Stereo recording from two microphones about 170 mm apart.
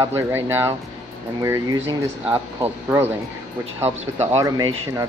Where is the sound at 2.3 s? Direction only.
15° right (ahead or behind).